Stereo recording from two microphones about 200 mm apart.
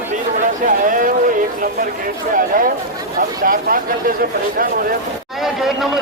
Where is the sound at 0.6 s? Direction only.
40° right (ahead or behind).